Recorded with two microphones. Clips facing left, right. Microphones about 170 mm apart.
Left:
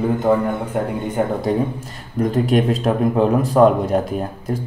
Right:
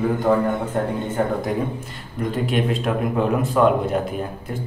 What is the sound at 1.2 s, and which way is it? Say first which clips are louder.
Speech: left 2 dB; 15° left (ahead or behind).